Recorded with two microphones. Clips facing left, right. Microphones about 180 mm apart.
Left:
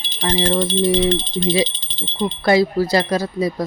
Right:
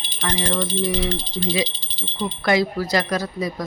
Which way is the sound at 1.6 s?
10° right (ahead or behind).